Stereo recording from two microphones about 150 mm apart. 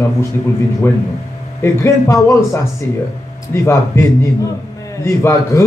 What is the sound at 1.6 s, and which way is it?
A man's voice, 20° left (ahead or behind).